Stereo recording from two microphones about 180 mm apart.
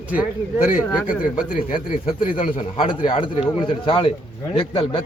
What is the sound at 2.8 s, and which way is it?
A man's voice, 30° left (ahead or behind).